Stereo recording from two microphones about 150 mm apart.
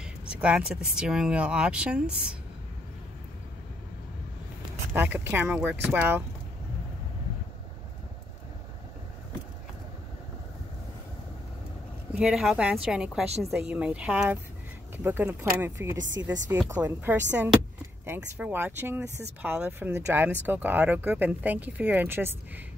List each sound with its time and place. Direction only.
0.3 s speech: 5° right (ahead or behind)
4.9 s speech: 15° right (ahead or behind)
12.1 s speech: 5° right (ahead or behind)